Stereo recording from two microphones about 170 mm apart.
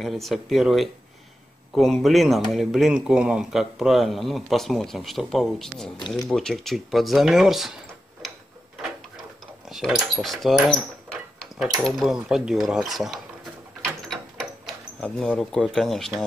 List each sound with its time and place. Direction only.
0.0 s a man's voice: centre (ahead or behind)
5.9 s speech: 25° left (ahead or behind)
6.2 s speech: centre (ahead or behind)
9.7 s a man's voice: centre (ahead or behind)
12.0 s a man's voice: centre (ahead or behind)
14.0 s a sound: centre (ahead or behind)
15.0 s a man's voice: 5° left (ahead or behind)